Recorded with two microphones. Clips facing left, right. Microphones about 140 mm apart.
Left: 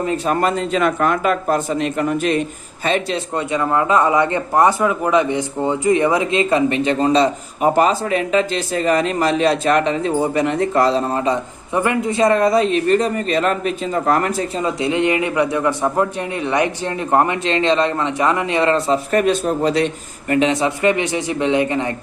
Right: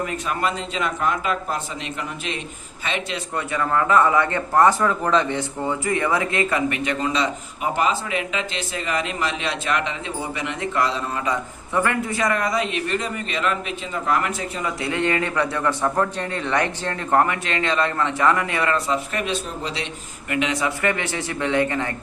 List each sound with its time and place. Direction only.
0.0 s speech: 30° left (ahead or behind)
0.3 s a man's voice: 45° left (ahead or behind)
3.3 s a man's voice: 20° left (ahead or behind)
11.7 s a man's voice: 20° left (ahead or behind)
19.1 s a man's voice: 50° left (ahead or behind)
20.3 s a man's voice: 30° left (ahead or behind)